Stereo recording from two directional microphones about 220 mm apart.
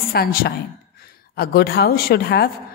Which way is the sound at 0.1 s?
40° left (ahead or behind).